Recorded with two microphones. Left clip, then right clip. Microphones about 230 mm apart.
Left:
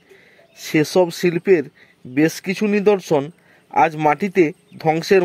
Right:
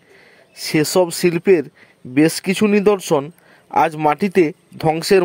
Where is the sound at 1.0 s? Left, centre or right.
Centre.